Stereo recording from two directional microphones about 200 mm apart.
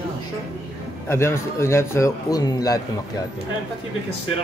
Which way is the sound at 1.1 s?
15° left (ahead or behind).